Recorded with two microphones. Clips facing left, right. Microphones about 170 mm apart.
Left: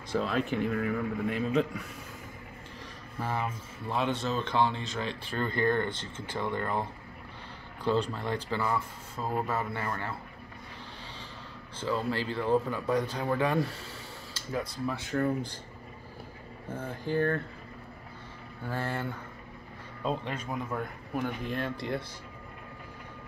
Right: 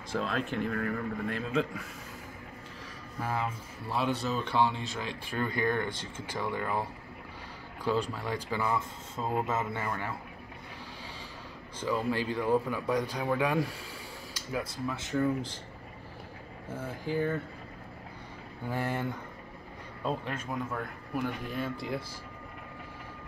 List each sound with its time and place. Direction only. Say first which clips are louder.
0.1 s a man's voice: left 3 dB; 5° left (ahead or behind)
3.2 s speech: even; 5° right (ahead or behind)
11.8 s a man's voice: even; 15° right (ahead or behind)
16.7 s speech: left 2 dB; 10° right (ahead or behind)
18.7 s speech: right 1 dB; 15° right (ahead or behind)
20.0 s a man's voice: left 1 dB; 5° right (ahead or behind)